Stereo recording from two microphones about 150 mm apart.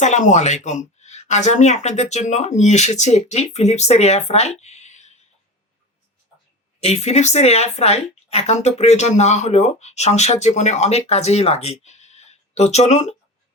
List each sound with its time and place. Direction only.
0.0 s speech: 55° left (ahead or behind)
6.7 s speech: 45° left (ahead or behind)